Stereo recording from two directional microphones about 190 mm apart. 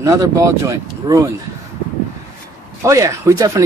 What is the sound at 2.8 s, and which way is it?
Speech, 15° right (ahead or behind).